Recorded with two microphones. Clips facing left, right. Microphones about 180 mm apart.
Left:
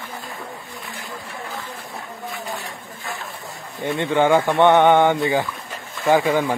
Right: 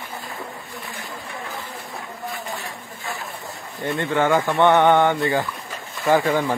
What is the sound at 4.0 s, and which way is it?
Speech, 20° left (ahead or behind).